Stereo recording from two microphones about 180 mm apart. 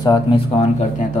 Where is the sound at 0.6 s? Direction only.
40° left (ahead or behind).